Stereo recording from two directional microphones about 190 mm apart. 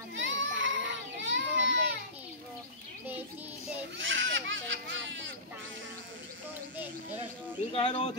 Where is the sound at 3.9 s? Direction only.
85° right.